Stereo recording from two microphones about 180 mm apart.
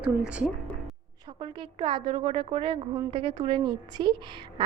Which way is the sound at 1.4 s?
30° right (ahead or behind).